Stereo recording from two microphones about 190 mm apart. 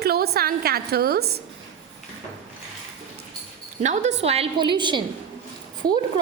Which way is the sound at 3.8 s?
40° right (ahead or behind).